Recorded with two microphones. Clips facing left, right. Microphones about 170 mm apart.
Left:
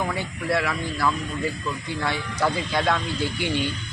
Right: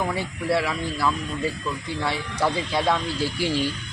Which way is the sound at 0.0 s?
5° right (ahead or behind).